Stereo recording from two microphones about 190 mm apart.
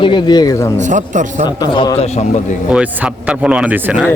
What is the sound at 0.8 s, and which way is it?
Speech, 40° right (ahead or behind).